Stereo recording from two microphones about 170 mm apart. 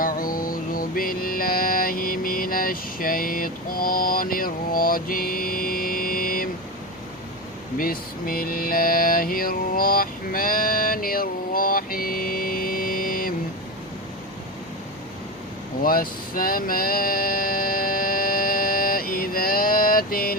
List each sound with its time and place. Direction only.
0.0 s music: 55° left (ahead or behind)
7.8 s mantra: 60° left (ahead or behind)
15.8 s a sound: 55° left (ahead or behind)